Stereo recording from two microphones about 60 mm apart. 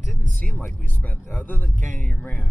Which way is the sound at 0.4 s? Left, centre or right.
Left.